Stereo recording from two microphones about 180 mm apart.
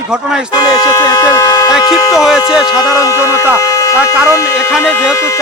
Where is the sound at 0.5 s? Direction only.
20° left (ahead or behind).